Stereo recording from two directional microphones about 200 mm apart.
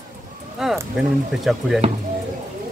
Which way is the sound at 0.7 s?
5° right (ahead or behind).